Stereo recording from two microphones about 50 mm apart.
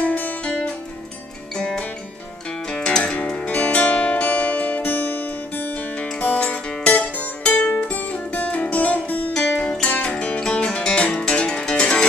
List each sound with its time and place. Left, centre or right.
0.0 s music: left
1.6 s music: centre
9.3 s music: centre